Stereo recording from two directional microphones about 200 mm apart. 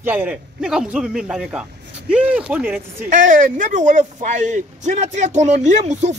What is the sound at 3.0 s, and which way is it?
Speech, 40° right (ahead or behind).